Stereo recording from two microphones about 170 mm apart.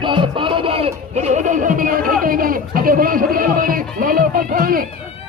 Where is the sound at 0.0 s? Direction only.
30° right (ahead or behind); by 2.1 s 55° right (ahead or behind).